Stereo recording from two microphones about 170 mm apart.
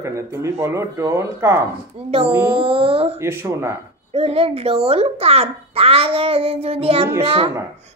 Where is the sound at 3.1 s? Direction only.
15° right (ahead or behind).